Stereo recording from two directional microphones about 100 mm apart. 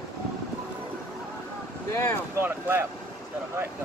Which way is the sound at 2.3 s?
20° right (ahead or behind).